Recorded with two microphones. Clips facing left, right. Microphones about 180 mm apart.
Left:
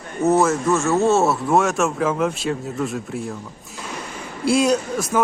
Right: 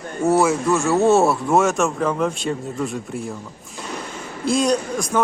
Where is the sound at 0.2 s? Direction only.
5° left (ahead or behind).